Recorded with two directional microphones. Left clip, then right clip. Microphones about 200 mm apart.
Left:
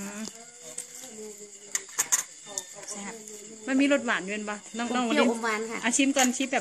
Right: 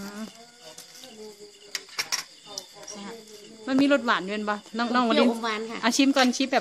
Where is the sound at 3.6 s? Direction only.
15° right (ahead or behind).